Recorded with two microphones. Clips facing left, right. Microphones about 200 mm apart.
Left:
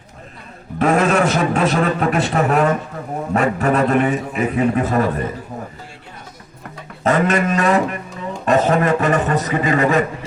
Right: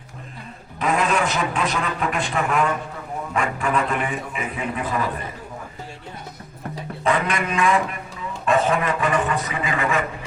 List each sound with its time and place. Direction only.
0.8 s a man's voice: 45° left (ahead or behind)
7.0 s a man's voice: 40° left (ahead or behind)